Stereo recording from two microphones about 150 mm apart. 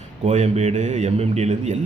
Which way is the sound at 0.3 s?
50° right (ahead or behind).